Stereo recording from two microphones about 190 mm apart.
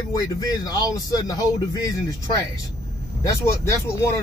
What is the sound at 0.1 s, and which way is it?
Speech, 20° left (ahead or behind).